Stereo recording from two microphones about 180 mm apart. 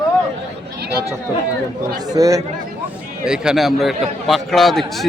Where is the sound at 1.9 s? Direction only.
20° right (ahead or behind).